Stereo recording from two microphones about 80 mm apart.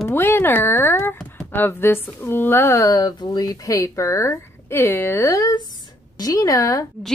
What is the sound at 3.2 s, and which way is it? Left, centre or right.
A woman's voice, left.